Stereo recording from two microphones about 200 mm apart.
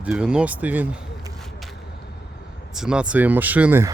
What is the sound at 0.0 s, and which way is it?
Speech, 5° right (ahead or behind).